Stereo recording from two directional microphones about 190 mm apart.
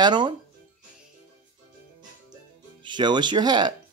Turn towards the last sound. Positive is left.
turn(degrees=-25)  # may be behind; listen again after turning